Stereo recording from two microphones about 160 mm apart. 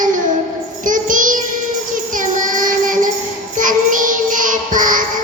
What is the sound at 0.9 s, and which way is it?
Child singing, 55° right (ahead or behind).